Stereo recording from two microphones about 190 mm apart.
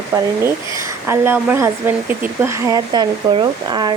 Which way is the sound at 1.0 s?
10° right (ahead or behind).